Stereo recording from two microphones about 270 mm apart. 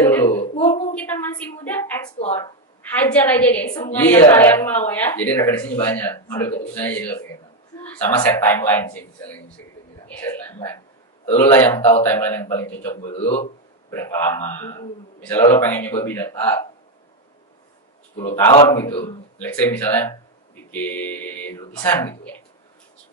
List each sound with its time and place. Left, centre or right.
0.0 s a sound: centre
0.4 s a sound: left
1.6 s a woman's voice: centre
2.1 s speech: left
3.0 s a woman's voice: centre
13.0 s speech: left
13.8 s a woman's voice: centre
18.2 s a woman's voice: centre
19.3 s a woman's voice: centre